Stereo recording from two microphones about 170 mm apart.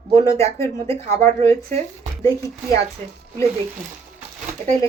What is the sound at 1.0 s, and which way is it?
Speech, 40° right (ahead or behind).